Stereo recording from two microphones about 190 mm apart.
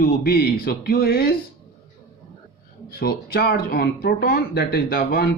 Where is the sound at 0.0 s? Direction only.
55° left (ahead or behind).